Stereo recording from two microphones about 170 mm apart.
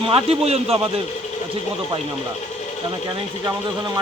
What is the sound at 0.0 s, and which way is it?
A man's voice, 30° right (ahead or behind).